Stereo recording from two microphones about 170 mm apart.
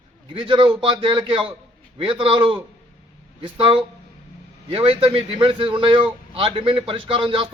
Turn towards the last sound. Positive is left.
turn(degrees=-30)  # may be behind; listen again after turning